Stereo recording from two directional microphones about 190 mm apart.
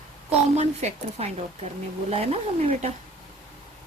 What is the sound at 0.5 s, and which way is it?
Speech, 35° right (ahead or behind).